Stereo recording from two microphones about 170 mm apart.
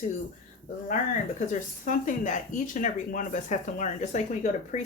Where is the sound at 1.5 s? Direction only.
50° left (ahead or behind).